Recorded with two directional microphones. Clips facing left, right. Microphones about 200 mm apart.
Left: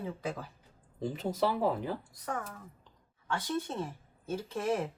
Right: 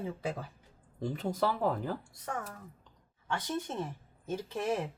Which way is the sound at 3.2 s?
20° right (ahead or behind).